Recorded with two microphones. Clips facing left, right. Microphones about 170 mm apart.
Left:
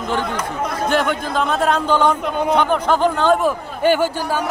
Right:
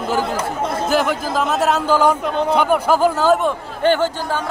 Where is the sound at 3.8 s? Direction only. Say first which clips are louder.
Even; 10° left (ahead or behind).